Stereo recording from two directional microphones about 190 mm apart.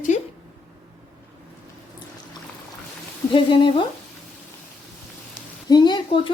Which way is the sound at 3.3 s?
25° left (ahead or behind).